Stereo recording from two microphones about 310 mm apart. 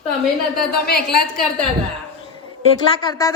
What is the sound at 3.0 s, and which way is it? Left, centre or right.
Speech, centre.